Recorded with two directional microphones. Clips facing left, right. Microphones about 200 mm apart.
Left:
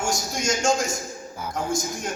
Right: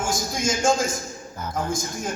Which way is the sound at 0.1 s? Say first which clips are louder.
Right 1 dB; centre (ahead or behind).